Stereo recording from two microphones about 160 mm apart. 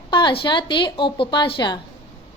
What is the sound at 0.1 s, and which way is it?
A woman's voice, 30° left (ahead or behind).